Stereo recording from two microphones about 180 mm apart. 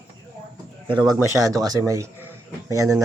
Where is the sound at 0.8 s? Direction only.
25° right (ahead or behind).